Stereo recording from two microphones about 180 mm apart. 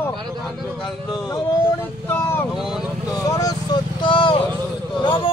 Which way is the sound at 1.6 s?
15° left (ahead or behind).